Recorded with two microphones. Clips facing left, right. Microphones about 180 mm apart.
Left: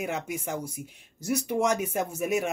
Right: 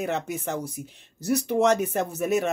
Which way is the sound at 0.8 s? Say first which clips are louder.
Right 2 dB; 40° right (ahead or behind).